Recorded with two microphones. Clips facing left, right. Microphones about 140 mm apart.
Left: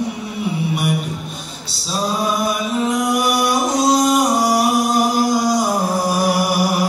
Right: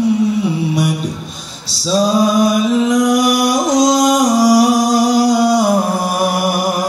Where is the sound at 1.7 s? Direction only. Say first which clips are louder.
Right 8 dB; 90° right.